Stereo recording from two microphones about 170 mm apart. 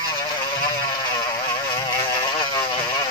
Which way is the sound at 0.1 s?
25° left (ahead or behind).